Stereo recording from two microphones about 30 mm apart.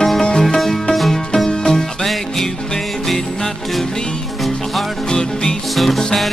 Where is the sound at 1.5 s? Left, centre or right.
Centre.